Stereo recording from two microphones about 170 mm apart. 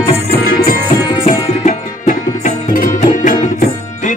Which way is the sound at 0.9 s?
40° left (ahead or behind).